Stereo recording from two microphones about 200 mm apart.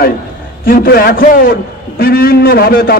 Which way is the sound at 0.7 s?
50° left (ahead or behind).